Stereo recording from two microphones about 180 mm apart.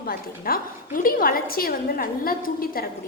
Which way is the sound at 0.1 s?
55° left (ahead or behind).